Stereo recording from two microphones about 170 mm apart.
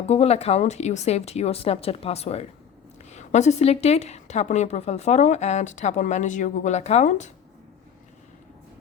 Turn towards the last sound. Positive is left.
turn(degrees=45)  # may be behind; listen again after turning